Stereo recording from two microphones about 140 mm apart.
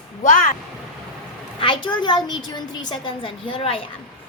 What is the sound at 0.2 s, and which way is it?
Speech, 65° left (ahead or behind).